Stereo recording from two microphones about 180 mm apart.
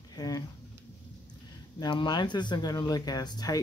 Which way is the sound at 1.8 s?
25° left (ahead or behind).